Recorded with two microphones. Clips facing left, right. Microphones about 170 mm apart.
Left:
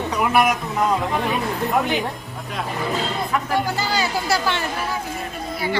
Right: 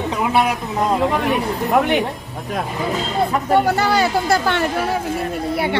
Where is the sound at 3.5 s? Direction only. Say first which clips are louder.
Right 8 dB; 65° right (ahead or behind).